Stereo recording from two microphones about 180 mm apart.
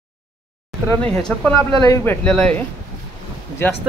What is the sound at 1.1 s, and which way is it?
Speech, 5° left (ahead or behind).